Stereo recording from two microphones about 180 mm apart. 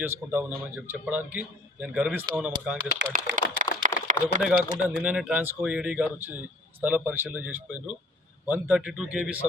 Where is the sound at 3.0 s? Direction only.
80° right.